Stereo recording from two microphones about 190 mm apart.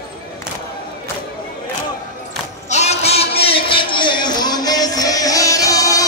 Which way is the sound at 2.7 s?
35° left (ahead or behind).